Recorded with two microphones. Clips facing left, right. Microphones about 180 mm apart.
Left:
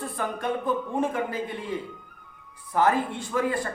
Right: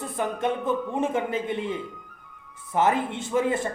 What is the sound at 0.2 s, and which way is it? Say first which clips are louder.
A man's voice: right 3 dB; 20° right (ahead or behind).